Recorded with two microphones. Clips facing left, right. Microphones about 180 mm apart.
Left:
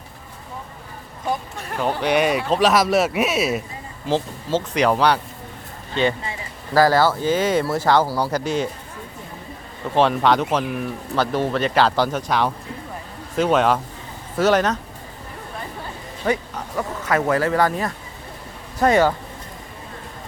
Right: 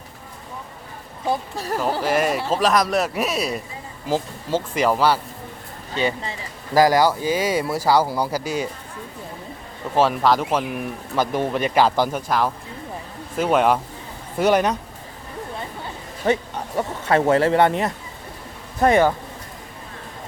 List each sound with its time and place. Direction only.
1.3 s speech: 35° right (ahead or behind)
1.8 s a man's voice: centre (ahead or behind)
9.9 s speech: 5° right (ahead or behind)
16.2 s speech: 30° right (ahead or behind)